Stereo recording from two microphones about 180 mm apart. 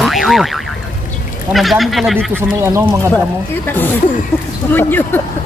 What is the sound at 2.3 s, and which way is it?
Speech, 15° right (ahead or behind).